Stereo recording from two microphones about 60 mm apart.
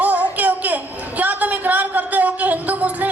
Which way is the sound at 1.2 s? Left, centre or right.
Right.